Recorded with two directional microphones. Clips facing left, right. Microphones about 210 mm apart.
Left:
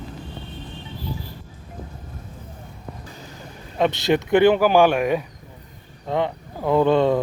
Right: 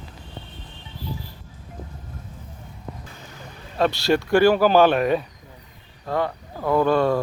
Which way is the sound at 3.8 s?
20° left (ahead or behind).